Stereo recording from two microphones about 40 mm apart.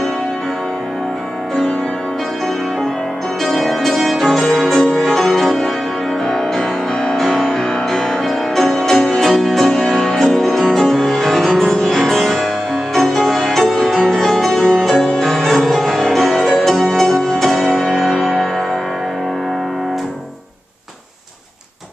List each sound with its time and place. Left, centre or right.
3.4 s music: centre
7.2 s music: centre
14.6 s music: left
14.9 s music: centre